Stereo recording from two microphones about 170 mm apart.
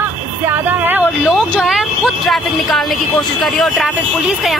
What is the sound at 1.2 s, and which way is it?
A woman's voice, centre (ahead or behind).